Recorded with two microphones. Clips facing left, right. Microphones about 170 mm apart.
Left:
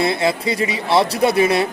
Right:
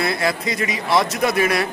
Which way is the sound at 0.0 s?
25° left (ahead or behind).